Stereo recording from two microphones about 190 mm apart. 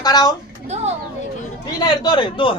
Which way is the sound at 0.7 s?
35° right (ahead or behind).